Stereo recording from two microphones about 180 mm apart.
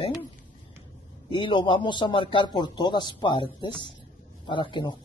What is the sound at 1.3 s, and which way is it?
A man's voice, 25° left (ahead or behind).